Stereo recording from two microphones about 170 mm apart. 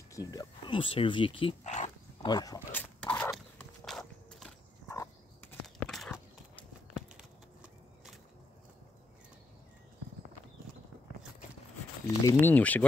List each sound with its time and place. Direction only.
0.1 s speech: 20° left (ahead or behind)
1.6 s speech: 45° left (ahead or behind)
2.2 s speech: 25° left (ahead or behind)
2.7 s a sound: 10° left (ahead or behind)
3.8 s walk: centre (ahead or behind)
4.8 s dog: 15° left (ahead or behind); by 6.2 s centre (ahead or behind)
12.2 s speech: 15° left (ahead or behind)